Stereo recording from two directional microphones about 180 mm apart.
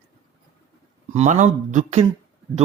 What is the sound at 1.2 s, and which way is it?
Speech, 40° right (ahead or behind).